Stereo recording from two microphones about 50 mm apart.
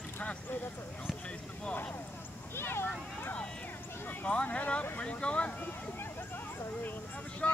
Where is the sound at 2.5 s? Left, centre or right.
Left.